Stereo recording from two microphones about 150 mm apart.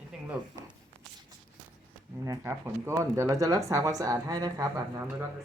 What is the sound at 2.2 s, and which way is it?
Speech, 20° right (ahead or behind).